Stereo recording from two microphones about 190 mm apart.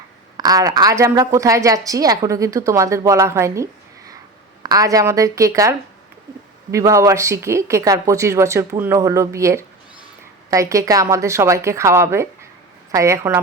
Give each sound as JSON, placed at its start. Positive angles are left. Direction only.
{"t": 0.3, "sound": "a woman's voice", "side_deg": -20}